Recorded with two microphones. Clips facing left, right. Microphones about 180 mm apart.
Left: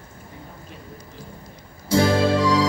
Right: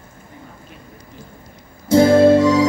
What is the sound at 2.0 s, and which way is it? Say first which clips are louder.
Music: right 8 dB; 45° right (ahead or behind).